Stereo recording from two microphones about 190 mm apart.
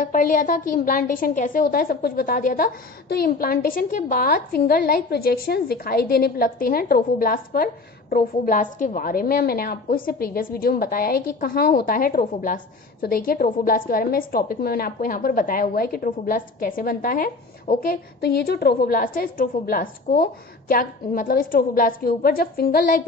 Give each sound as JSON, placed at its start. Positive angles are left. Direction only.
{"t": 0.0, "sound": "a woman's voice", "side_deg": 45}